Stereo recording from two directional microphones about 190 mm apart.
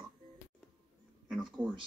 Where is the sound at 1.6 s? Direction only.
25° right (ahead or behind).